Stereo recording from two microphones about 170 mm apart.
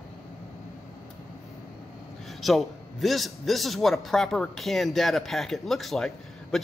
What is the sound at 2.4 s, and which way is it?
A man's voice, centre (ahead or behind).